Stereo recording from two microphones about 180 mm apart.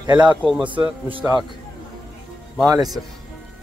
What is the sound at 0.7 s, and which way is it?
Speech, 30° right (ahead or behind).